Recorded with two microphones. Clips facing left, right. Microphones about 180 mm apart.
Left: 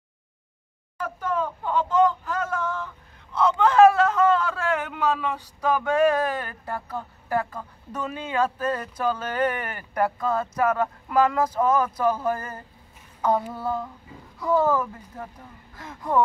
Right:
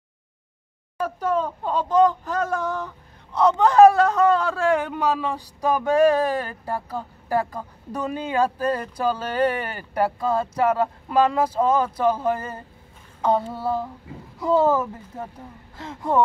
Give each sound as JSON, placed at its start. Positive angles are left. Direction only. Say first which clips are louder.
{"t": 1.0, "sound": "a sound", "louder": "right 4 dB", "side_deg": -30}
{"t": 3.3, "sound": "speech", "louder": "right 3 dB", "side_deg": -40}
{"t": 14.1, "sound": "a child's voice", "louder": "right 6 dB", "side_deg": -75}
{"t": 14.4, "sound": "speech", "louder": "right 3 dB", "side_deg": -25}